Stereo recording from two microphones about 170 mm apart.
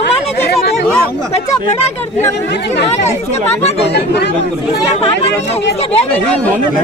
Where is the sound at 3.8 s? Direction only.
80° left.